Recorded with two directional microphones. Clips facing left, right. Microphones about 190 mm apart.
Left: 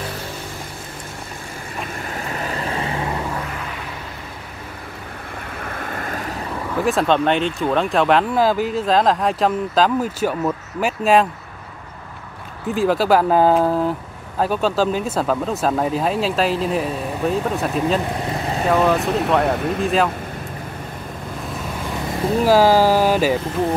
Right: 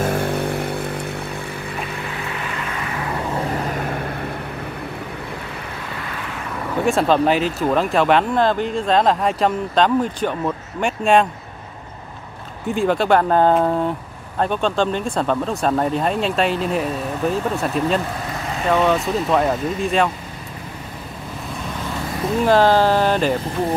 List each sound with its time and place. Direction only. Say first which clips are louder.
0.0 s vehicle: right 10 dB; 55° right (ahead or behind)
2.1 s vehicle: left 2 dB; 40° left (ahead or behind)
3.4 s vehicle: right 7 dB; 40° right (ahead or behind)
5.8 s vehicle: left 3 dB; 50° left (ahead or behind)
6.8 s speech: right 1 dB; centre (ahead or behind)
12.6 s speech: even; centre (ahead or behind)
22.4 s speech: left 1 dB; 5° left (ahead or behind)